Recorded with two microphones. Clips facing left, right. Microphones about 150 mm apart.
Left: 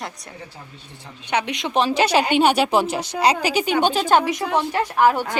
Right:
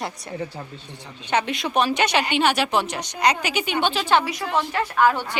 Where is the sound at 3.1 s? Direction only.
30° left (ahead or behind); by 4.4 s 45° left (ahead or behind).